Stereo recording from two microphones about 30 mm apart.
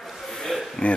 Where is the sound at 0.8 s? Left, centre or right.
Left.